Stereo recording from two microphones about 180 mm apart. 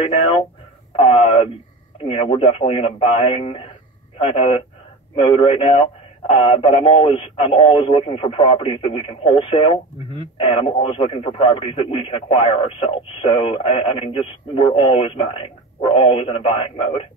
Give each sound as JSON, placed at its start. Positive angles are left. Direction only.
{"t": 0.0, "sound": "a man's voice", "side_deg": 30}